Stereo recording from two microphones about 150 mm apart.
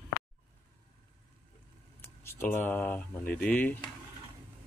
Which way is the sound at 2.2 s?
15° left (ahead or behind).